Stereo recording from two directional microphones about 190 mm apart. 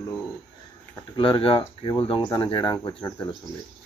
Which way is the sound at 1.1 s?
25° left (ahead or behind).